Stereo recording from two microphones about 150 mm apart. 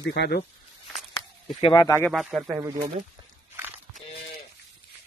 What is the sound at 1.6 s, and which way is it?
Speech, 30° left (ahead or behind).